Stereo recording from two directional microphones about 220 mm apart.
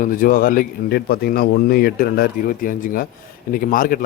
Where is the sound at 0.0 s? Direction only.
40° left (ahead or behind).